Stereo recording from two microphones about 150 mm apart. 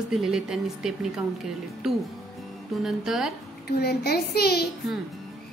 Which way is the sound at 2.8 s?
Centre (ahead or behind).